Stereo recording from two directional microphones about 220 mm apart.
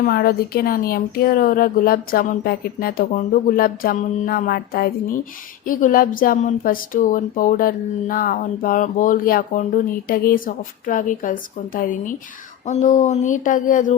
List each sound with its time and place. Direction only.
0.0 s a woman's voice: 40° left (ahead or behind)